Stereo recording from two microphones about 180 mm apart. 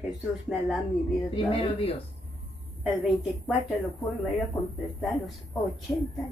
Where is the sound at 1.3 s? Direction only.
30° left (ahead or behind).